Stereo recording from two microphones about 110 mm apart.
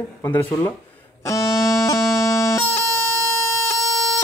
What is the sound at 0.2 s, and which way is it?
Speech, 20° left (ahead or behind).